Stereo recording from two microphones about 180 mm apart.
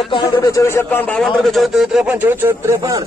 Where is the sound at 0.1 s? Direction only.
25° left (ahead or behind).